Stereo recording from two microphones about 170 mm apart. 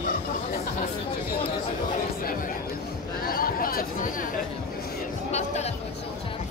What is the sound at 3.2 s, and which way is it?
Chatter, 60° left (ahead or behind).